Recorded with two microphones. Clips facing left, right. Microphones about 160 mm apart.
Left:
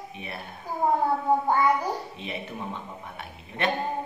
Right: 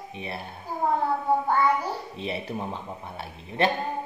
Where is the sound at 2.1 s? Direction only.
35° right (ahead or behind).